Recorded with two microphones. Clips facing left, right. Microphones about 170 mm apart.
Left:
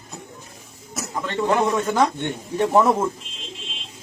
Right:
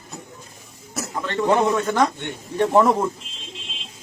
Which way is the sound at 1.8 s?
10° left (ahead or behind).